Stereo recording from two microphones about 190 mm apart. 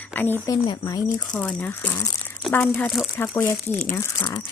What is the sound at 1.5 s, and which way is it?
Speech, 10° left (ahead or behind).